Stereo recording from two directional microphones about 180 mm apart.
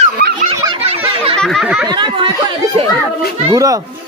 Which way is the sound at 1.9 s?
25° right (ahead or behind).